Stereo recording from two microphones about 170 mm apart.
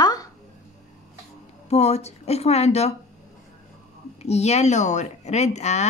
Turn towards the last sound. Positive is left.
turn(degrees=40)  # may be behind; listen again after turning